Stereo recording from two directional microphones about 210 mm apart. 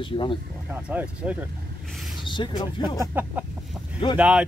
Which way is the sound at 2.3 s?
20° left (ahead or behind).